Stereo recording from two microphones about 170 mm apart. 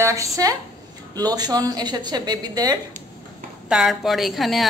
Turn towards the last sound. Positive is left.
turn(degrees=0)  # may be behind; listen again after turning